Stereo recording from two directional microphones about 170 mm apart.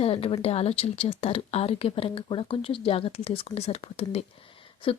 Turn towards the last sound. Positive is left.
turn(degrees=30)  # may be behind; listen again after turning